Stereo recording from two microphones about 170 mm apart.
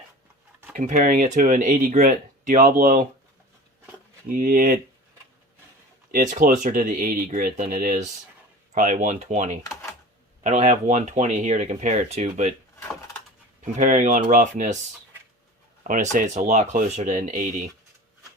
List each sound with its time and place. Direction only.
0.7 s speech: 50° right (ahead or behind)
4.3 s speech: 55° right (ahead or behind)
6.1 s speech: 50° right (ahead or behind)
13.7 s speech: 50° right (ahead or behind)
15.8 s speech: 50° right (ahead or behind)